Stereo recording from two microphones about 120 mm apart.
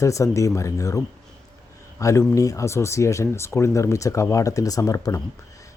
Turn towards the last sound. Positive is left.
turn(degrees=30)  # may be behind; listen again after turning